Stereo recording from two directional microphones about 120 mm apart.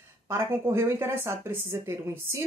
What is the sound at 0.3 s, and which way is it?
Speech, 20° right (ahead or behind).